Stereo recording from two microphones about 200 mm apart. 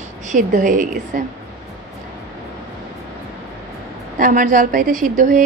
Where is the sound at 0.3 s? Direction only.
40° right (ahead or behind).